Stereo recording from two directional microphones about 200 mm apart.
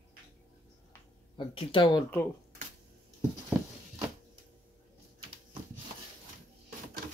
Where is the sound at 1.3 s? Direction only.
25° left (ahead or behind).